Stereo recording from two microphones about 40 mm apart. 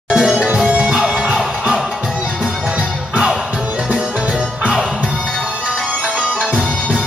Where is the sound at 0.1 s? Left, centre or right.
Centre.